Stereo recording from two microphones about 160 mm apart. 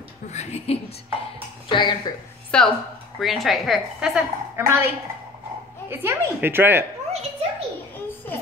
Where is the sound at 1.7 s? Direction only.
30° left (ahead or behind).